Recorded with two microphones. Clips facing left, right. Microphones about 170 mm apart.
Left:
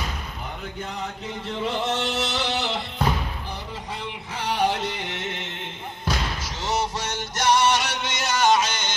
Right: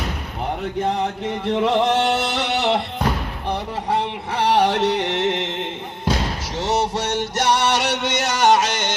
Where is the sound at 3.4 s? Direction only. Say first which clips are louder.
Right 10 dB; 65° right (ahead or behind).